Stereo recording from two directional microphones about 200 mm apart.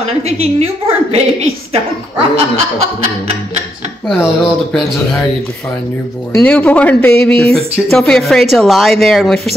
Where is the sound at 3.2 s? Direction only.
30° right (ahead or behind).